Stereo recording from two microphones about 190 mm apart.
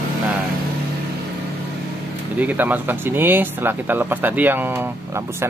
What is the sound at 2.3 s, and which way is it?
Speech, 10° right (ahead or behind).